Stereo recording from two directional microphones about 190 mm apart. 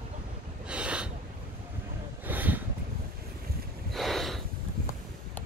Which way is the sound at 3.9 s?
Centre (ahead or behind).